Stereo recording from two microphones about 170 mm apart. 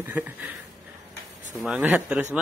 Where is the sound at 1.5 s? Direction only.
Centre (ahead or behind).